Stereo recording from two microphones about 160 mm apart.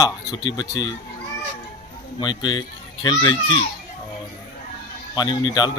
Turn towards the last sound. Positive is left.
turn(degrees=25)  # may be behind; listen again after turning